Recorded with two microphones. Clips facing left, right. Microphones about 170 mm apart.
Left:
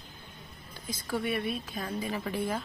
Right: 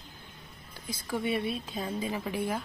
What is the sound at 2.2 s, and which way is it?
Speech, 10° right (ahead or behind).